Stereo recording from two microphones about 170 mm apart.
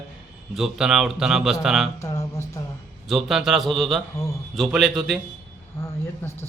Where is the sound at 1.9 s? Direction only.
20° left (ahead or behind).